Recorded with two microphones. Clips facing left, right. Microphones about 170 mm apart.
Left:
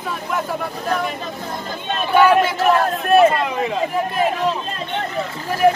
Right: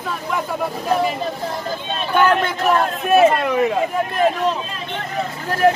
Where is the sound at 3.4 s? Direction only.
55° right (ahead or behind).